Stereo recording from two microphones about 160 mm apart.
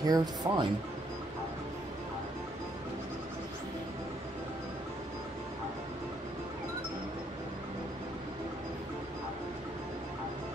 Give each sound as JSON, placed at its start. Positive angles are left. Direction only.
{"t": 0.0, "sound": "speech", "side_deg": -25}